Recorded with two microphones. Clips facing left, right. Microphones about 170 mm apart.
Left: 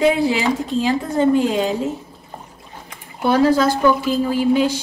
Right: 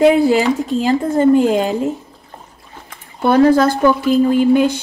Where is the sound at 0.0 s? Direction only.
55° right (ahead or behind).